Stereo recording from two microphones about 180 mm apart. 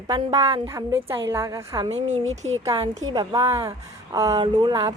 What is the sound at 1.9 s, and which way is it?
Speech, 40° right (ahead or behind).